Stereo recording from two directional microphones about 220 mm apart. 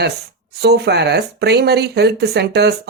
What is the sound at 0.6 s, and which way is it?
Speech, 50° right (ahead or behind).